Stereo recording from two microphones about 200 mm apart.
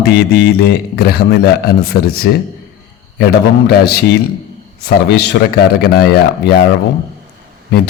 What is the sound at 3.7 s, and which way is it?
Speech, 55° left (ahead or behind).